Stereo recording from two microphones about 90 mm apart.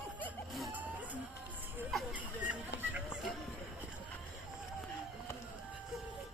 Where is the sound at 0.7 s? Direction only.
15° right (ahead or behind).